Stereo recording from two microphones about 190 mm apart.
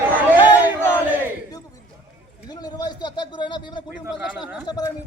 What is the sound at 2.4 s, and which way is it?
Speech, 20° left (ahead or behind).